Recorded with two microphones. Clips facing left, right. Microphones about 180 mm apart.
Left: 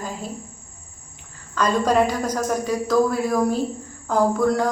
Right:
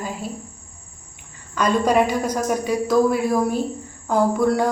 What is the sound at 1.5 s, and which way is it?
Speech, 10° right (ahead or behind).